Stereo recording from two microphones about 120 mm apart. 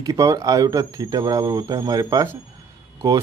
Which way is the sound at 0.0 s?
30° right (ahead or behind).